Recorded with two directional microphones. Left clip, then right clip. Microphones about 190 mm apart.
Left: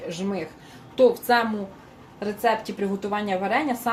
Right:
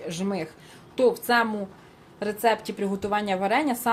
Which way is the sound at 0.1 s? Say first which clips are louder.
Right 1 dB; 45° right (ahead or behind).